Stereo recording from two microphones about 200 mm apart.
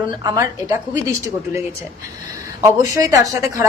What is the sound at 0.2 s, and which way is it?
Speech, 20° right (ahead or behind).